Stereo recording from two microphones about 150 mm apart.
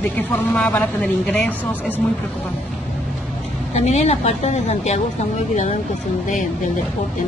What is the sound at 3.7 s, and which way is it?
A woman's voice, 45° left (ahead or behind).